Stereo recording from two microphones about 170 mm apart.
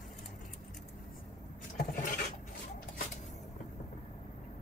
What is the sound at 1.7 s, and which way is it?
Filing, 55° left (ahead or behind).